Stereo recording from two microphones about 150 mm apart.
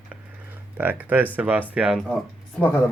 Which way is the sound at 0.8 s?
10° right (ahead or behind).